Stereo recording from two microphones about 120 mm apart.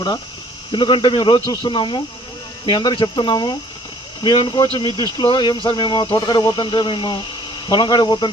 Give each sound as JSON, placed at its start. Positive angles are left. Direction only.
{"t": 0.7, "sound": "speech", "side_deg": 40}